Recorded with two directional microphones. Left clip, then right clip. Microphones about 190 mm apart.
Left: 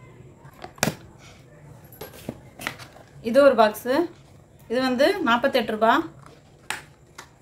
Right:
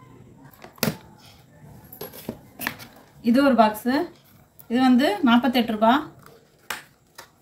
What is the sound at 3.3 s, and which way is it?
Speech, 40° left (ahead or behind).